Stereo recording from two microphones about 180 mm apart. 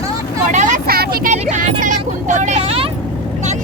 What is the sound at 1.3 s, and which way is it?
Vehicle, 45° right (ahead or behind).